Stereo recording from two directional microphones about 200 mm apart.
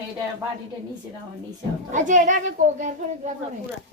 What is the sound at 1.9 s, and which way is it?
Speech, 40° right (ahead or behind).